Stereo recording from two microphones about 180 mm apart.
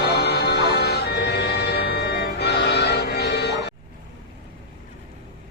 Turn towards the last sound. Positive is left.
turn(degrees=65)  # may be behind; listen again after turning